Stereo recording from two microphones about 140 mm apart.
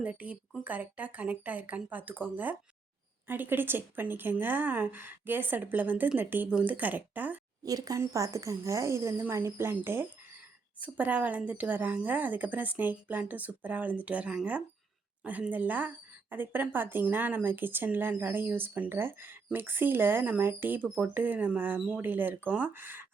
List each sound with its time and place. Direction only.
0.0 s speech: 10° right (ahead or behind)
7.6 s speech: 25° right (ahead or behind)